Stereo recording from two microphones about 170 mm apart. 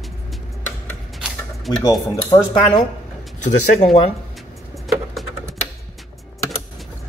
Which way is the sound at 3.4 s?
45° left (ahead or behind).